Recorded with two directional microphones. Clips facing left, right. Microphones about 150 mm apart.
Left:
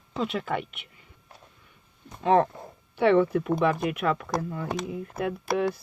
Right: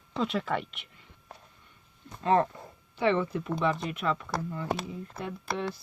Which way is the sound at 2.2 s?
10° left (ahead or behind).